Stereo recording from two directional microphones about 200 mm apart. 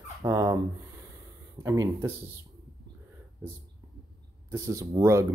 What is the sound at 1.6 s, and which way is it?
Speech, 15° right (ahead or behind).